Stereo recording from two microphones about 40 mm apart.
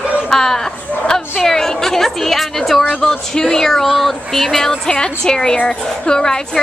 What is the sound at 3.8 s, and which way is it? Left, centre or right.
A woman's voice, centre.